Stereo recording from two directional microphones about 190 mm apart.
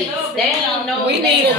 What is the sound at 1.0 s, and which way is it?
Speech, 65° right (ahead or behind).